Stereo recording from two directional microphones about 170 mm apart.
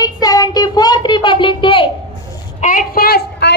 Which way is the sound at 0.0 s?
20° left (ahead or behind).